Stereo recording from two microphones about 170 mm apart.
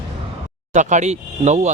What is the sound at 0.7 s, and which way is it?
Speech, 45° right (ahead or behind).